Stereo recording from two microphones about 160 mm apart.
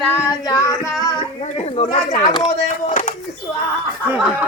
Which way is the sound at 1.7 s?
45° left (ahead or behind).